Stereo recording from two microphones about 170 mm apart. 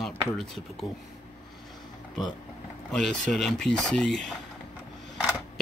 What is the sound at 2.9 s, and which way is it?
Speech, 5° left (ahead or behind).